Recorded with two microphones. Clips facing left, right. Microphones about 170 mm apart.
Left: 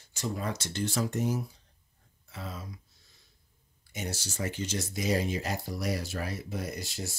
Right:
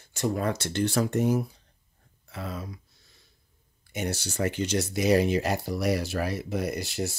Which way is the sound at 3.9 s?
65° right (ahead or behind).